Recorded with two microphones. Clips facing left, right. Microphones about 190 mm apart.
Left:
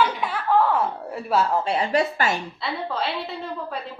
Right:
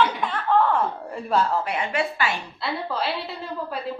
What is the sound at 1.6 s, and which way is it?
Speech, 30° left (ahead or behind).